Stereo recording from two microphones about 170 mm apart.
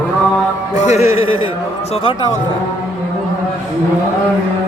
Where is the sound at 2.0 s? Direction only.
30° left (ahead or behind).